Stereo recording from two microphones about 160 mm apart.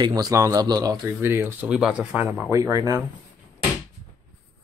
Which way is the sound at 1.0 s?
15° right (ahead or behind).